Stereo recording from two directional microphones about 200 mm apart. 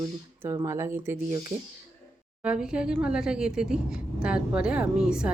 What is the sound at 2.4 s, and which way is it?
Speech, 5° right (ahead or behind).